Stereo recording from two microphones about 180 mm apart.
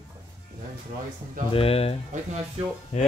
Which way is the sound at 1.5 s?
30° left (ahead or behind).